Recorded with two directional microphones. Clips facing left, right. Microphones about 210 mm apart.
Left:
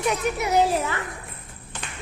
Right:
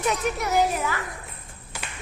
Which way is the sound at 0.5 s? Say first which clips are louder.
Left 3 dB; 25° left (ahead or behind).